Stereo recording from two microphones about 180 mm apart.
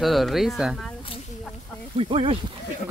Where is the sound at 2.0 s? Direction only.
30° right (ahead or behind).